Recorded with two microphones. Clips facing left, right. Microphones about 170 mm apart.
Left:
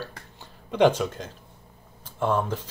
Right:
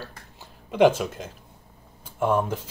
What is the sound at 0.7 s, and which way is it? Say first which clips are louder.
Speech: right 1 dB; 5° right (ahead or behind).